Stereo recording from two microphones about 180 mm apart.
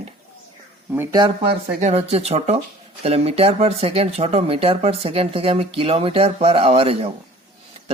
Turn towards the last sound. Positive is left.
turn(degrees=-35)  # may be behind; listen again after turning